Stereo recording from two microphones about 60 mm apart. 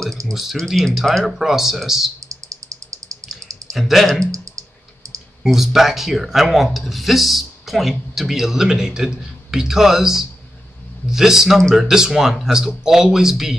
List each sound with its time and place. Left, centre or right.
0.3 s speech: centre
2.2 s a sound: right
3.7 s speech: centre
4.2 s clicking: right
5.4 s a man's voice: centre